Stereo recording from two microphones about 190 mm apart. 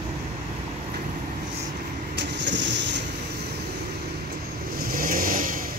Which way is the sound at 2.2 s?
65° right (ahead or behind).